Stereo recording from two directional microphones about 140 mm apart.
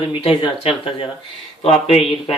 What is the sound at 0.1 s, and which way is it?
Speech, 40° left (ahead or behind).